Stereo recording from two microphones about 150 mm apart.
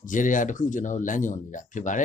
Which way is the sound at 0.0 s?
60° left (ahead or behind).